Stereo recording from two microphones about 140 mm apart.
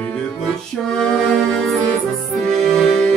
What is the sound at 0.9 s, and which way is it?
Music, centre (ahead or behind).